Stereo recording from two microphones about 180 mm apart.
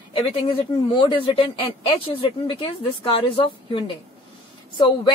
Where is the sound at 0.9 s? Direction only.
30° left (ahead or behind).